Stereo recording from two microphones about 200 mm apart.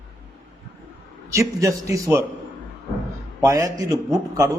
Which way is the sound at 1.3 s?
15° right (ahead or behind).